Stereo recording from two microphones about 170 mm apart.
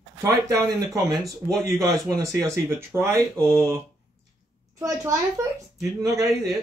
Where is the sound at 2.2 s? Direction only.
20° right (ahead or behind).